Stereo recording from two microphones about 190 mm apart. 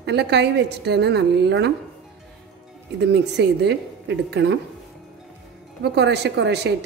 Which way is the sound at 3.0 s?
60° right (ahead or behind).